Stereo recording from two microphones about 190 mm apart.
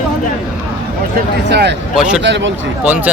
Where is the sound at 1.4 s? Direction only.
60° right (ahead or behind).